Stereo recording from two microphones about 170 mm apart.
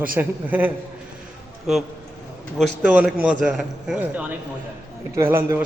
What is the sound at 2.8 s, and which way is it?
A man's voice, 5° right (ahead or behind).